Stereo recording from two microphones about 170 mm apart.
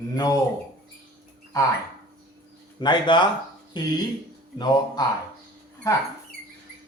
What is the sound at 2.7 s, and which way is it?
Speech, 25° left (ahead or behind).